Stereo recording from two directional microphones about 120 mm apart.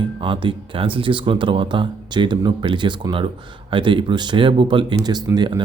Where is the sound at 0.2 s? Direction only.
45° right (ahead or behind).